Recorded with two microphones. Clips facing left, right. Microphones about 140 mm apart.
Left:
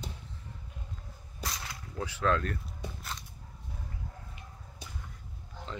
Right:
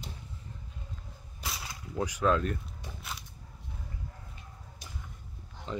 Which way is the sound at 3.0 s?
5° right (ahead or behind).